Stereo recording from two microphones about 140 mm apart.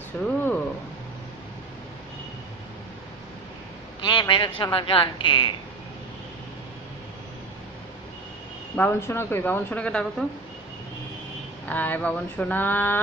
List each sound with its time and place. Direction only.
0.1 s speech: 10° left (ahead or behind)
4.0 s a woman's voice: 30° left (ahead or behind)
8.7 s speech: 15° left (ahead or behind)
11.6 s speech: 10° left (ahead or behind)